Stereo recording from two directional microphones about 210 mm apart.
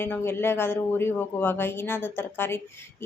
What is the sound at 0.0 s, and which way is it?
A woman's voice, 10° left (ahead or behind).